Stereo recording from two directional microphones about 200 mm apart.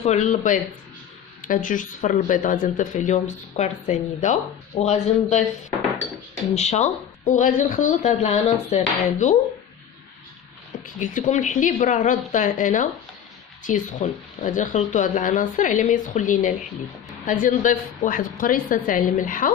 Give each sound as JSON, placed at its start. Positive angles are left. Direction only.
{"t": 0.0, "sound": "speech", "side_deg": 35}
{"t": 6.5, "sound": "speech", "side_deg": 35}
{"t": 11.0, "sound": "a woman's voice", "side_deg": 40}